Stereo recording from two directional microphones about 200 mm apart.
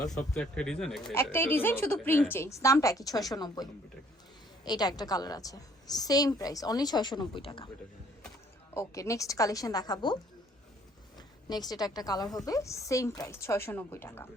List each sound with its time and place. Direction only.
0.0 s a woman's voice: 20° left (ahead or behind)
0.3 s a woman's voice: 5° left (ahead or behind); by 7.7 s 25° left (ahead or behind)
8.7 s a woman's voice: 15° left (ahead or behind)
11.4 s a woman's voice: 20° left (ahead or behind)